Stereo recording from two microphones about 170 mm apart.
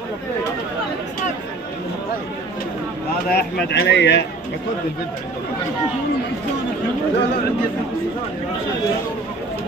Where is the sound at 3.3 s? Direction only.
70° left (ahead or behind); by 4.2 s 90° left.